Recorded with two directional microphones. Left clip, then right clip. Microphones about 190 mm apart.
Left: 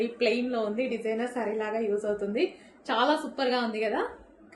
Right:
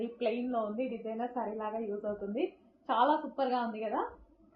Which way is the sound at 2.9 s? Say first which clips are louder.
Left 3 dB; 20° left (ahead or behind).